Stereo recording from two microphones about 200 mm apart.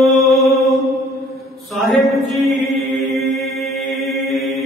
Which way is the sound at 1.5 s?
Centre (ahead or behind).